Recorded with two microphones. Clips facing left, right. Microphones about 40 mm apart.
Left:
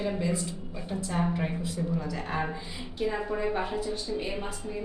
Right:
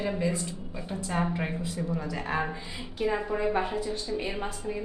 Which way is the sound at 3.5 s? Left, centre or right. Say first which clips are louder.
Right 2 dB; centre.